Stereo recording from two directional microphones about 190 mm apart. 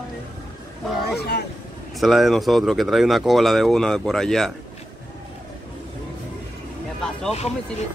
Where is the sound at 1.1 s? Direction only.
55° left (ahead or behind).